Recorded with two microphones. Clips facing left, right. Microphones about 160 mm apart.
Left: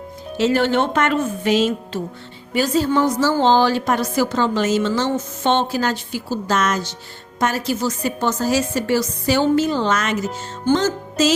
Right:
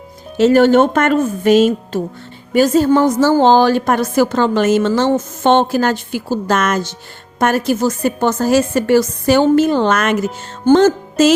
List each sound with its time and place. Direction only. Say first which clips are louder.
0.3 s a woman's voice: right 8 dB; 50° right (ahead or behind)
10.7 s music: right 8 dB; 55° right (ahead or behind)